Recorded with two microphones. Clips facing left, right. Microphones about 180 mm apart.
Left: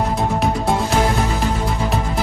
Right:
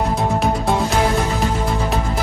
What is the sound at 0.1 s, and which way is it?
Music, centre (ahead or behind).